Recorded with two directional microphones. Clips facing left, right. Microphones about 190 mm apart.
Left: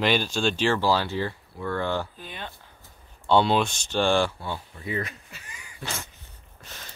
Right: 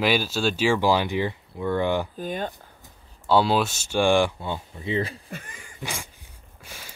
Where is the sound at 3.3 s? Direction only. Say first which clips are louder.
Even; 5° right (ahead or behind); by 5.1 s 25° right (ahead or behind).